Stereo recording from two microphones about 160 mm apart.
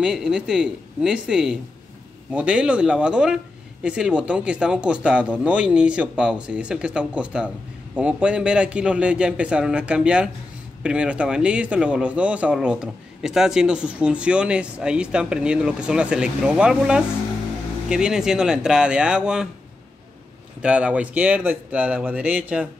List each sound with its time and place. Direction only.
0.0 s speech: 5° right (ahead or behind)
20.6 s speech: 10° right (ahead or behind)